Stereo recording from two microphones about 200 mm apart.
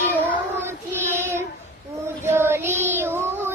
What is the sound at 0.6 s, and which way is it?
Child singing, 10° right (ahead or behind).